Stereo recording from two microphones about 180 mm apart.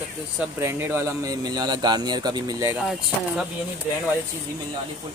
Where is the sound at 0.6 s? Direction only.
15° right (ahead or behind).